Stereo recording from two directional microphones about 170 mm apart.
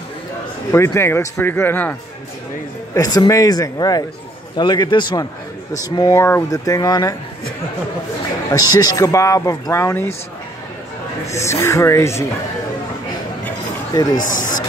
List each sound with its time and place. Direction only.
0.7 s a man's voice: 15° left (ahead or behind)
8.5 s a man's voice: 20° left (ahead or behind)
11.2 s speech: 15° left (ahead or behind)
13.9 s a man's voice: 25° left (ahead or behind)
14.2 s speech: 50° left (ahead or behind)